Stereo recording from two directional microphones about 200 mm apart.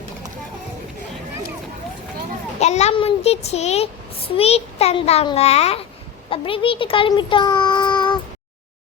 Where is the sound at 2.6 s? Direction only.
35° left (ahead or behind).